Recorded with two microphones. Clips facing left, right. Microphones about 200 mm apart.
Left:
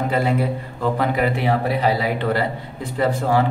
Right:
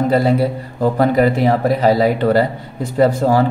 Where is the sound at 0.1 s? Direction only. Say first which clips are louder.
Right 6 dB; 35° right (ahead or behind).